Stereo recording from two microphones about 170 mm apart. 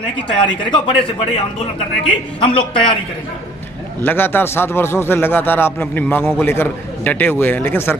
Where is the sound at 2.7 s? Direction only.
30° left (ahead or behind).